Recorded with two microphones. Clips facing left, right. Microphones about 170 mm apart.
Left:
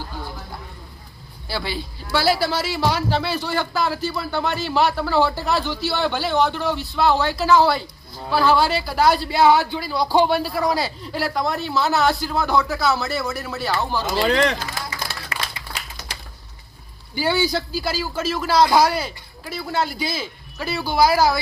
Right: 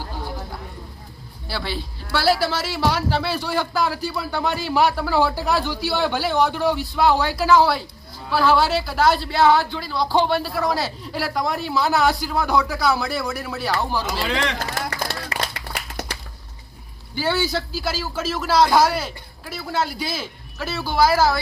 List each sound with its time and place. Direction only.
1.5 s a man's voice: centre (ahead or behind)
14.2 s speech: 40° left (ahead or behind)
14.8 s a sound: 65° right (ahead or behind)
15.5 s clapping: 60° right (ahead or behind)
17.2 s a man's voice: centre (ahead or behind)